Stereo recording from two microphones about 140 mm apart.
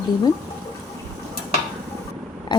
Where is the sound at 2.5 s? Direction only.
35° left (ahead or behind).